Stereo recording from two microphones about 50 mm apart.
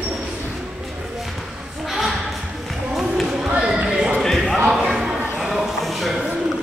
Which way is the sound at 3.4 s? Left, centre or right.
Right.